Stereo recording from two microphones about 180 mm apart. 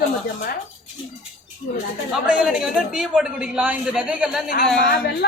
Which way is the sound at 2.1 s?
Centre (ahead or behind).